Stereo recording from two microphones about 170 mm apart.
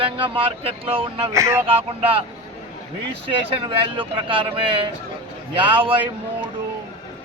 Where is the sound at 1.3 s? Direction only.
15° right (ahead or behind).